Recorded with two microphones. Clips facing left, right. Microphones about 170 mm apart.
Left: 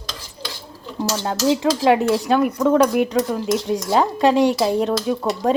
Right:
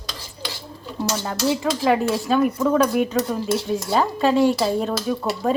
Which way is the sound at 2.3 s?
10° left (ahead or behind).